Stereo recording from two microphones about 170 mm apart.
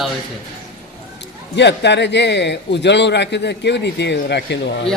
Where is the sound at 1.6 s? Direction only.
90° left.